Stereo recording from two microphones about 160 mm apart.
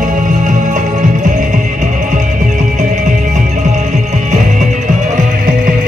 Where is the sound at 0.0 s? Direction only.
50° right (ahead or behind).